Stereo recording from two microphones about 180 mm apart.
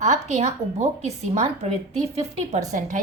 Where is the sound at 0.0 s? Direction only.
40° right (ahead or behind).